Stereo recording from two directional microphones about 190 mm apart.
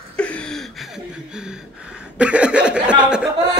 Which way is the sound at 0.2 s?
5° left (ahead or behind).